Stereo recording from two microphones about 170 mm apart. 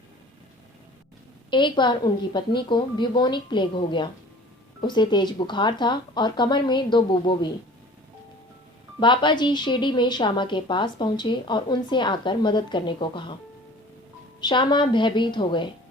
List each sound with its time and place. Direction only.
1.5 s a woman's voice: 30° left (ahead or behind)
9.0 s a woman's voice: 25° left (ahead or behind)
14.4 s a woman's voice: 25° left (ahead or behind)